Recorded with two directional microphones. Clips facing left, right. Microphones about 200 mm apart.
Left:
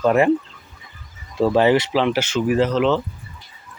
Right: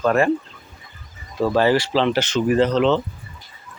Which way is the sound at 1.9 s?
10° left (ahead or behind).